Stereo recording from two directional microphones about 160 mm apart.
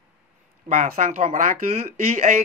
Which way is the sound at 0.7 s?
50° right (ahead or behind).